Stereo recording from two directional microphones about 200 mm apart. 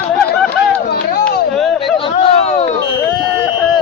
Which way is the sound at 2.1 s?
35° left (ahead or behind).